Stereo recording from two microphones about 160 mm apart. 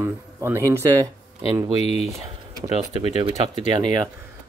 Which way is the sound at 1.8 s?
40° left (ahead or behind).